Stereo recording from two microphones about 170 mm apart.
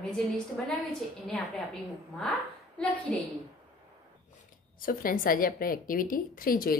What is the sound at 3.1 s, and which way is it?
Speech, 5° left (ahead or behind).